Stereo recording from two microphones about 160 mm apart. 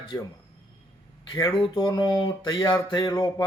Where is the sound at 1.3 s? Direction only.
25° left (ahead or behind).